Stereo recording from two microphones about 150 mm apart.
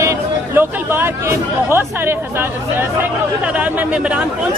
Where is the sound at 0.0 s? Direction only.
15° right (ahead or behind).